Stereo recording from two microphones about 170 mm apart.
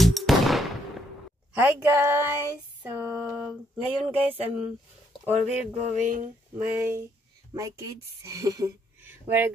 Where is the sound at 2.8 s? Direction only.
10° right (ahead or behind).